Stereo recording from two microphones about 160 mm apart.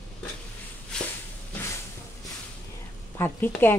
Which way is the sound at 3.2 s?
10° left (ahead or behind).